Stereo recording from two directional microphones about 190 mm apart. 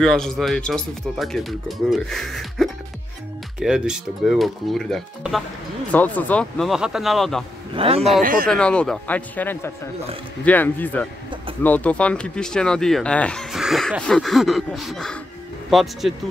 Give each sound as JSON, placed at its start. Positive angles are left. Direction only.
{"t": 0.0, "sound": "speech", "side_deg": 0}
{"t": 7.7, "sound": "a man's voice", "side_deg": -30}
{"t": 8.2, "sound": "speech", "side_deg": -45}
{"t": 8.5, "sound": "speech", "side_deg": 5}